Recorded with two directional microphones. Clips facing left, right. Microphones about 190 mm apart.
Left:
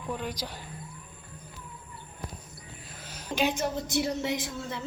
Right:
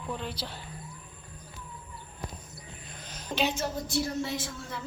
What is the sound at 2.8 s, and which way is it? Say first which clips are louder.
Speech: left 1 dB; 5° left (ahead or behind).